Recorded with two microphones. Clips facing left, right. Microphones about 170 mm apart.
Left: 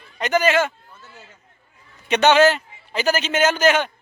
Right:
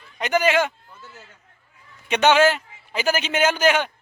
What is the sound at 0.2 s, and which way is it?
Speech, 10° right (ahead or behind).